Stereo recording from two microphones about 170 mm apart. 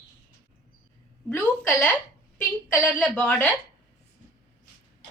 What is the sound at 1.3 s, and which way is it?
A woman's voice, 5° left (ahead or behind).